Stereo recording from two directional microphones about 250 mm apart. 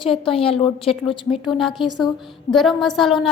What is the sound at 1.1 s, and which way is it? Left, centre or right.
Speech, centre.